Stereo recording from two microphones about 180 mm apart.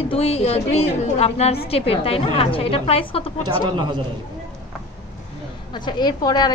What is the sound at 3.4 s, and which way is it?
Speech, 25° right (ahead or behind).